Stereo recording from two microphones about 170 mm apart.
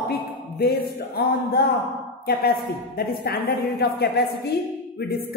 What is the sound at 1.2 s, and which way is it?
A woman's voice, 65° left (ahead or behind).